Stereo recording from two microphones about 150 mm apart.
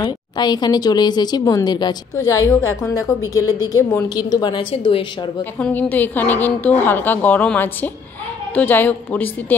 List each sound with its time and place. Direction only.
0.0 s speech: 30° left (ahead or behind)
5.6 s a woman's voice: 10° left (ahead or behind)